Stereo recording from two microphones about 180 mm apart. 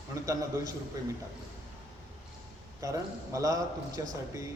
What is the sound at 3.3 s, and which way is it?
Speech, 20° right (ahead or behind).